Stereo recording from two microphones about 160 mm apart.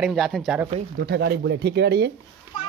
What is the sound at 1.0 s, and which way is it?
Speech, 85° right.